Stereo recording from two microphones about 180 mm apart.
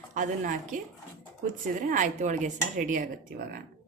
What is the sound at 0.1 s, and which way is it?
Speech, 45° right (ahead or behind).